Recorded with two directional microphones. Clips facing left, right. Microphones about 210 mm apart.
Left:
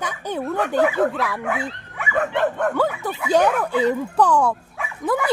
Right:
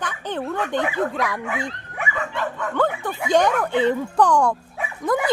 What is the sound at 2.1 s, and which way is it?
Dog, 55° left (ahead or behind).